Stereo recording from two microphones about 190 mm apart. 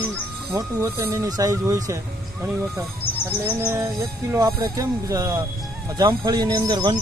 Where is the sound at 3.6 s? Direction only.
15° right (ahead or behind).